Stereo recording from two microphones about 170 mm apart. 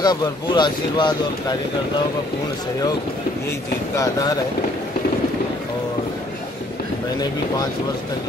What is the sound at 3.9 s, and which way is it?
Speech, 20° left (ahead or behind).